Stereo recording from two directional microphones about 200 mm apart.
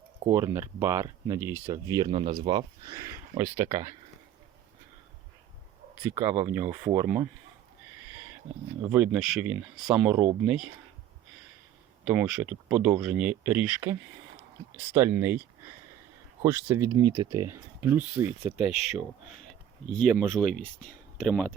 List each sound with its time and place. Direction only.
0.3 s speech: 15° right (ahead or behind)
6.0 s speech: 10° right (ahead or behind)
8.8 s speech: 10° right (ahead or behind)
12.0 s speech: 5° right (ahead or behind)
16.4 s speech: 10° right (ahead or behind)
18.6 s speech: 30° left (ahead or behind)
19.9 s speech: 5° left (ahead or behind)